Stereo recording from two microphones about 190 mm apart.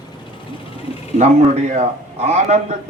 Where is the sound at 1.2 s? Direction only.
35° right (ahead or behind).